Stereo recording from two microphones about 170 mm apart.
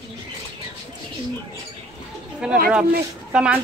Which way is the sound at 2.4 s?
5° right (ahead or behind).